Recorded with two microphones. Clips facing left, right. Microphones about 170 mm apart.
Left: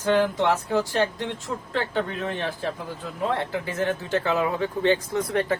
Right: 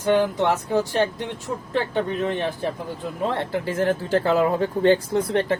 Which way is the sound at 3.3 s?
30° right (ahead or behind).